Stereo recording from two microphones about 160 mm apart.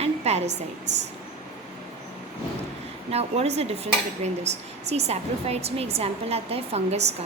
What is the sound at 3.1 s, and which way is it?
A woman's voice, 40° right (ahead or behind).